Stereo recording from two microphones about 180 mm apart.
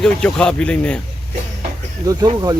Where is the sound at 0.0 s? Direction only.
5° left (ahead or behind).